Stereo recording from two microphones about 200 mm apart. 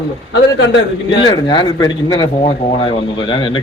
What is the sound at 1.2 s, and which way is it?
A man's voice, 20° left (ahead or behind).